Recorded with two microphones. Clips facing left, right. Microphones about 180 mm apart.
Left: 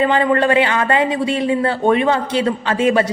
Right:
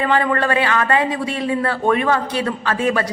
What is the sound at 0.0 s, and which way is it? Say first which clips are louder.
A woman's voice: left 3 dB; 20° left (ahead or behind).